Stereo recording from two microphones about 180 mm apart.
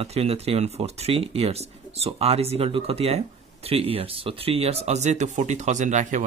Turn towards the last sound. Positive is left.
turn(degrees=-40)  # may be behind; listen again after turning